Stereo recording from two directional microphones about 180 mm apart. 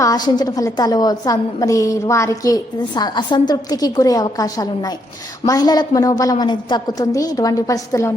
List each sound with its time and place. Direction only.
0.0 s a woman's voice: 20° left (ahead or behind)